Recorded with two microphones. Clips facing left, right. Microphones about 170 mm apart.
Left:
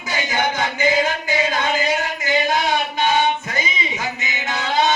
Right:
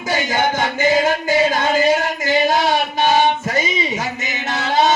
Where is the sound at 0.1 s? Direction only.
45° right (ahead or behind).